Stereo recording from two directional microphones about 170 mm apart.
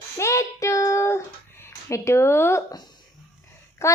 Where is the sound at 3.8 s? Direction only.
15° left (ahead or behind).